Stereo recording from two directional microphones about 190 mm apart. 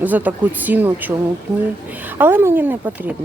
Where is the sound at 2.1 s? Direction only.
10° right (ahead or behind).